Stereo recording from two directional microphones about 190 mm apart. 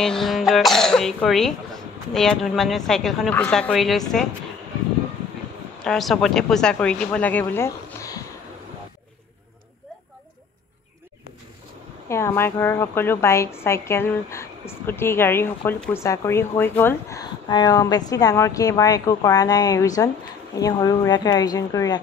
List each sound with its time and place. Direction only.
0.0 s speech: centre (ahead or behind)
5.9 s speech: centre (ahead or behind)
12.1 s a woman's voice: 15° left (ahead or behind)